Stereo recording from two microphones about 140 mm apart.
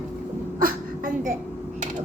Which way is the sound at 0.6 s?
90° right.